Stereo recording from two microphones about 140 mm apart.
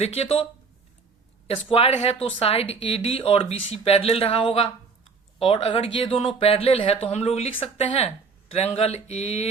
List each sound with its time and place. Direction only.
0.0 s speech: 50° left (ahead or behind)
1.7 s speech: 50° left (ahead or behind)